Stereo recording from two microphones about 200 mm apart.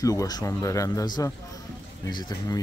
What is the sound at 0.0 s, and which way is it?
Speech, 15° left (ahead or behind).